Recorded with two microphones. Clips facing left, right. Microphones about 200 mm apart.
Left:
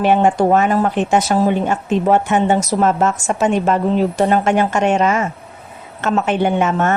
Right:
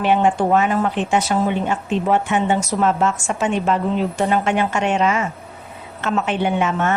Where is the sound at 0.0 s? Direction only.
45° left (ahead or behind).